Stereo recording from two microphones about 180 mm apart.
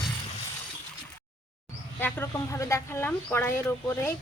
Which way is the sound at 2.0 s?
10° left (ahead or behind).